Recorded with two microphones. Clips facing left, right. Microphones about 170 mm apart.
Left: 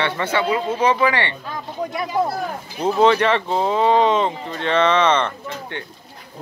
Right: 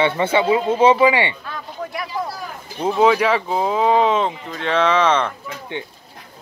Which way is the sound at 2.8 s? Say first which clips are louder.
Even; 5° right (ahead or behind).